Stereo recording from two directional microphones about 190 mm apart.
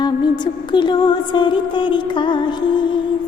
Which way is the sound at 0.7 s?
25° left (ahead or behind).